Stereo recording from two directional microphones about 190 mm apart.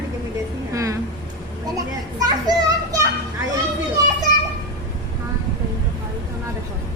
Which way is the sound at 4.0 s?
20° right (ahead or behind).